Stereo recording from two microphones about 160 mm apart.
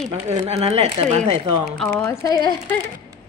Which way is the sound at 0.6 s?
40° right (ahead or behind).